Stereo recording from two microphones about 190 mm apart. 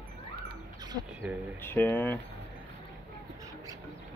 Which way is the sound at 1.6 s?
10° left (ahead or behind).